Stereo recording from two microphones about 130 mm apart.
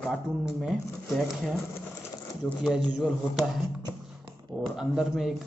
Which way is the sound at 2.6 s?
5° right (ahead or behind).